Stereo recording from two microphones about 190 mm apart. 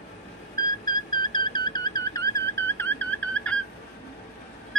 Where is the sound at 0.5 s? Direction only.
20° left (ahead or behind).